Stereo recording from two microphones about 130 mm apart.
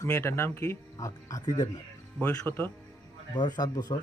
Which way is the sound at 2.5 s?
15° left (ahead or behind).